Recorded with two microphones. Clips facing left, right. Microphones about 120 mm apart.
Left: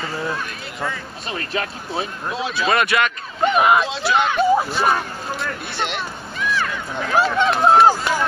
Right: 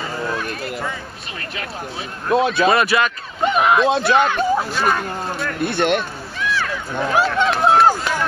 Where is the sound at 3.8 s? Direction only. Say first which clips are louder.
Right 5 dB; 50° right (ahead or behind).